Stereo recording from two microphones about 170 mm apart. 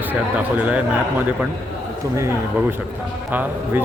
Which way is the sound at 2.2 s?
15° right (ahead or behind).